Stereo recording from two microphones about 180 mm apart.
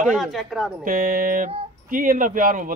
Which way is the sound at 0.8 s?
50° right (ahead or behind).